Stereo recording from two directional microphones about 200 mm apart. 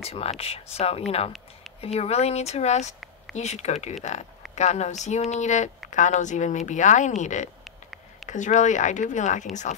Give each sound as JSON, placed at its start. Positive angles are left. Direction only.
{"t": 0.0, "sound": "speech", "side_deg": 30}